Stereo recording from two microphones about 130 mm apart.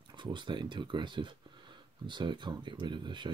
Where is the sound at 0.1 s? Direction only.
35° right (ahead or behind).